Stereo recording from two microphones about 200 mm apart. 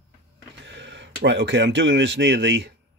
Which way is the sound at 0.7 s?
65° right (ahead or behind).